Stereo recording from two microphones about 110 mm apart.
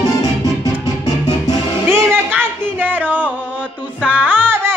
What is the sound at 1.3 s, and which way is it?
Music, 25° right (ahead or behind).